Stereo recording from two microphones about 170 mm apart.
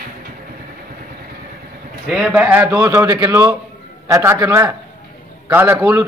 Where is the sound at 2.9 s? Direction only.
25° right (ahead or behind).